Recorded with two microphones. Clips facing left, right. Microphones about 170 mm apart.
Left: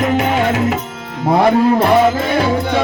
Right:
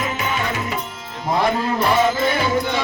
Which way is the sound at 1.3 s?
65° left (ahead or behind).